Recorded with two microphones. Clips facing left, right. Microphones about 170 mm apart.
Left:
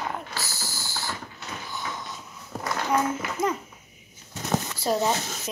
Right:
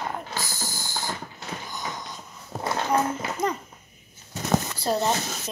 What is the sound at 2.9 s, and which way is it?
Speech, centre (ahead or behind).